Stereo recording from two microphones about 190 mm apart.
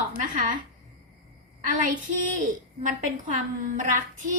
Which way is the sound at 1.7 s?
45° right (ahead or behind).